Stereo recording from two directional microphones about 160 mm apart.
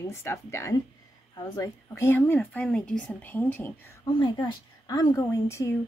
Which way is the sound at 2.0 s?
15° left (ahead or behind).